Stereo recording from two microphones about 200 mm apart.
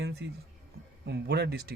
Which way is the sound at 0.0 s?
55° right (ahead or behind).